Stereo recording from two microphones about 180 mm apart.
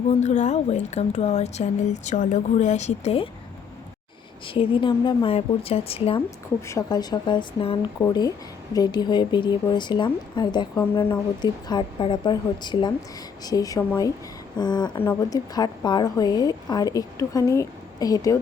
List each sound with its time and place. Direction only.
0.1 s a woman's voice: 40° left (ahead or behind)
4.4 s a woman's voice: 30° left (ahead or behind)
6.7 s speech: 20° left (ahead or behind)